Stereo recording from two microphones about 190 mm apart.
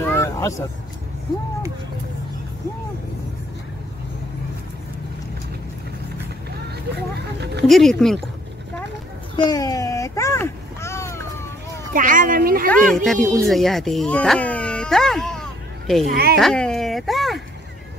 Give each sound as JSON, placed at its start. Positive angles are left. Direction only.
{"t": 0.0, "sound": "vehicle", "side_deg": 15}
{"t": 7.2, "sound": "a sound", "side_deg": -60}
{"t": 7.6, "sound": "speech", "side_deg": 0}
{"t": 9.4, "sound": "a sound", "side_deg": 20}
{"t": 11.9, "sound": "speech", "side_deg": -45}
{"t": 12.6, "sound": "speech", "side_deg": 5}
{"t": 16.1, "sound": "speech", "side_deg": -55}
{"t": 16.3, "sound": "speech", "side_deg": 5}